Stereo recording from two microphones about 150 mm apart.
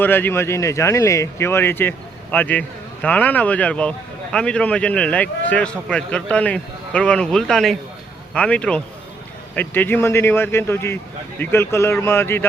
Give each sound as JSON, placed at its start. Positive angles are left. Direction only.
{"t": 0.0, "sound": "speech", "side_deg": 15}